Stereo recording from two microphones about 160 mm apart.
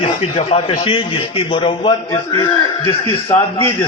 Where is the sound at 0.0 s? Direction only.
35° left (ahead or behind).